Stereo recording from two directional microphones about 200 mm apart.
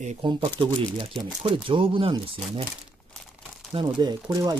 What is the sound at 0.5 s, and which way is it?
Speech, 25° right (ahead or behind).